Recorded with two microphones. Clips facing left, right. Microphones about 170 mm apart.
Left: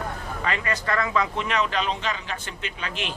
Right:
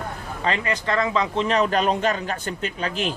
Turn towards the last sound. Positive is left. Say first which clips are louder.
# right 6 dB
turn(degrees=-40)  # may be behind; listen again after turning